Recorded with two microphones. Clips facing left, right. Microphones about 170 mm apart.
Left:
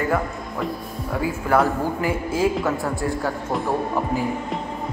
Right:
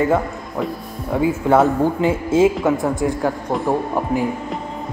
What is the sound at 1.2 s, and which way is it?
A man's voice, 25° right (ahead or behind).